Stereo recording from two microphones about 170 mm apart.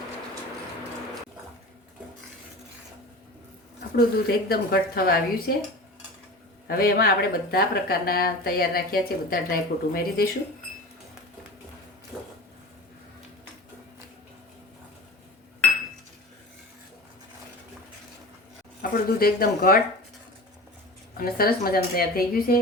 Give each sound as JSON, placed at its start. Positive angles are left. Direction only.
{"t": 3.9, "sound": "speech", "side_deg": 65}
{"t": 6.7, "sound": "speech", "side_deg": 60}
{"t": 12.1, "sound": "a sound", "side_deg": 0}
{"t": 18.8, "sound": "speech", "side_deg": 60}
{"t": 21.2, "sound": "speech", "side_deg": 60}